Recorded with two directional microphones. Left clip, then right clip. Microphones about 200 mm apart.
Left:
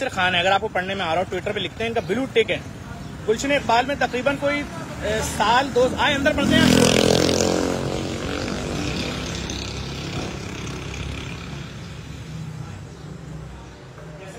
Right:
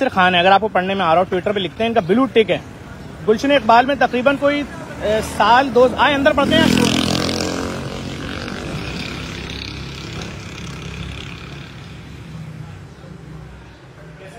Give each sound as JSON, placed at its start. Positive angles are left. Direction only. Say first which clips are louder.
{"t": 0.0, "sound": "speech", "louder": "right 6 dB", "side_deg": -30}
{"t": 6.7, "sound": "vehicle", "louder": "left 1 dB", "side_deg": 45}